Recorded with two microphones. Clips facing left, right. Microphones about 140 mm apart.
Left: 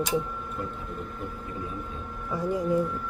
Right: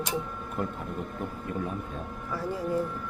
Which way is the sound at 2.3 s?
15° left (ahead or behind).